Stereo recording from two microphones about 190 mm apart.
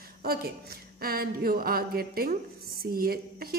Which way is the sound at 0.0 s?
55° right (ahead or behind).